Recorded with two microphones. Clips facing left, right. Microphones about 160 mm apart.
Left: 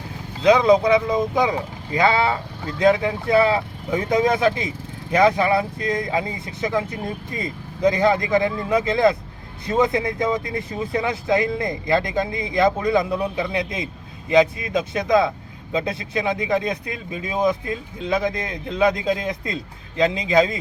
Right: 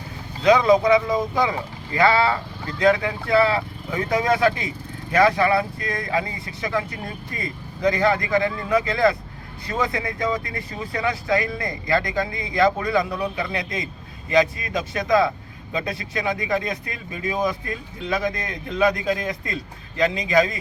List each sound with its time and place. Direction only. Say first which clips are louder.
0.4 s speech: left 1 dB; 15° left (ahead or behind)